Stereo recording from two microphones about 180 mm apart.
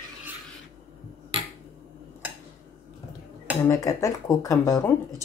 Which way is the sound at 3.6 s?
20° left (ahead or behind).